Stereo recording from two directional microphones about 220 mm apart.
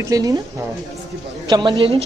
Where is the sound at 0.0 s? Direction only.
15° right (ahead or behind).